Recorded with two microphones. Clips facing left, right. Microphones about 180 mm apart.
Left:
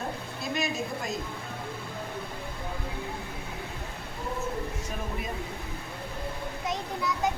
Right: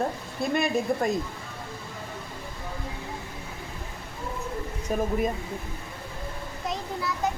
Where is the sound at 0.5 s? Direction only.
55° right (ahead or behind).